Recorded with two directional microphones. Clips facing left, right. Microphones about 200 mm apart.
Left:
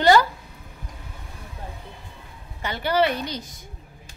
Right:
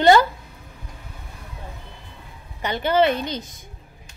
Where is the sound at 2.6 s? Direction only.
20° right (ahead or behind).